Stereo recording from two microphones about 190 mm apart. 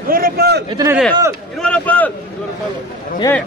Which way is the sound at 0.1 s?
55° right (ahead or behind).